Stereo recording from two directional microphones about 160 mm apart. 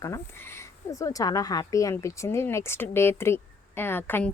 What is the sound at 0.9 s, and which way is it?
Speech, 20° left (ahead or behind).